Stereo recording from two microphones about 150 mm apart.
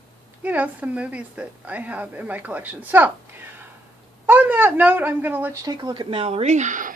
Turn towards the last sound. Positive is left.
turn(degrees=-55)  # may be behind; listen again after turning